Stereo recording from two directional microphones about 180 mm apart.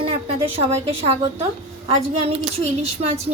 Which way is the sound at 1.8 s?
35° right (ahead or behind).